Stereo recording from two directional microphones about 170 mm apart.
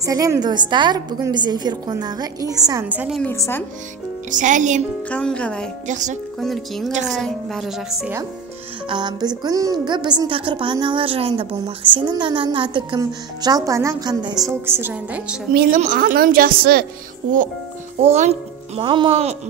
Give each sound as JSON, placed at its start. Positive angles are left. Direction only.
{"t": 0.0, "sound": "a woman's voice", "side_deg": -20}
{"t": 3.2, "sound": "a woman's voice", "side_deg": 15}
{"t": 4.3, "sound": "speech", "side_deg": -45}
{"t": 5.1, "sound": "speech", "side_deg": 5}
{"t": 5.9, "sound": "speech", "side_deg": -45}
{"t": 6.4, "sound": "speech", "side_deg": 0}
{"t": 6.9, "sound": "speech", "side_deg": -45}
{"t": 7.2, "sound": "speech", "side_deg": 0}
{"t": 8.8, "sound": "a woman's voice", "side_deg": -25}
{"t": 14.7, "sound": "a woman's voice", "side_deg": -10}
{"t": 15.8, "sound": "a woman's voice", "side_deg": -55}
{"t": 18.0, "sound": "speech", "side_deg": -45}
{"t": 18.8, "sound": "speech", "side_deg": -30}